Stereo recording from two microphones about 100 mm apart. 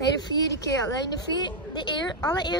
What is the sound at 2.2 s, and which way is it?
Speech, 40° left (ahead or behind).